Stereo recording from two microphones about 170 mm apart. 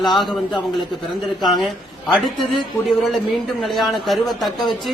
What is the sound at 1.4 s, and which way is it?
Speech, centre (ahead or behind).